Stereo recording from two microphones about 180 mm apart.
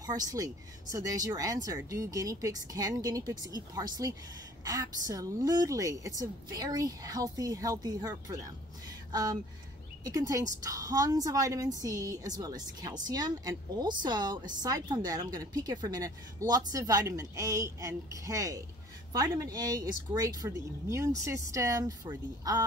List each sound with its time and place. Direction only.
0.0 s a woman's voice: 20° right (ahead or behind)